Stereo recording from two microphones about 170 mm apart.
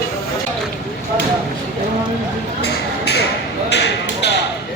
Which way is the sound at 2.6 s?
75° left (ahead or behind).